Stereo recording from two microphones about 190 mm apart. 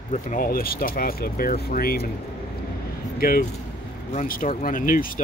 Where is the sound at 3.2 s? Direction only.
50° left (ahead or behind).